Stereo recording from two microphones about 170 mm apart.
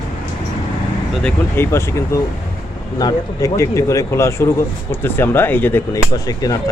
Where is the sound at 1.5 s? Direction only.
15° left (ahead or behind).